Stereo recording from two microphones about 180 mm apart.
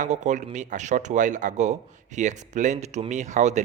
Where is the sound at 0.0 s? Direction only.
40° right (ahead or behind).